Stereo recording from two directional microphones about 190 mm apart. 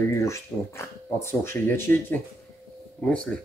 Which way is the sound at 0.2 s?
15° left (ahead or behind).